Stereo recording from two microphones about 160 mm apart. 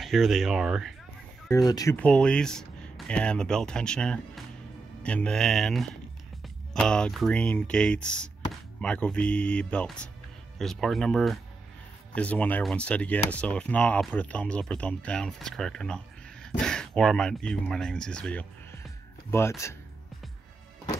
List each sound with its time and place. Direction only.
0.0 s speech: centre (ahead or behind)
1.5 s speech: 25° left (ahead or behind)
2.0 s speech: 5° left (ahead or behind)